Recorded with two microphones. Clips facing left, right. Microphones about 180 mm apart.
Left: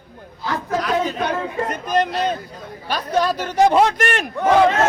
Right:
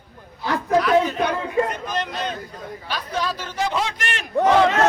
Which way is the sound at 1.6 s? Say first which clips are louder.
Left 6 dB; 45° left (ahead or behind).